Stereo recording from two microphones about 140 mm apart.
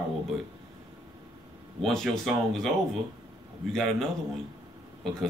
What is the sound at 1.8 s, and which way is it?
Speech, centre (ahead or behind).